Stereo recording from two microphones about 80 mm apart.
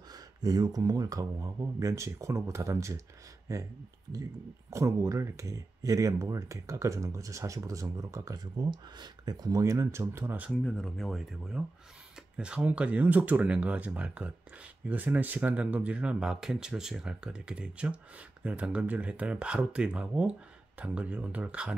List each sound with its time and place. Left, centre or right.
0.1 s speech: right
8.5 s speech: right
10.6 s speech: centre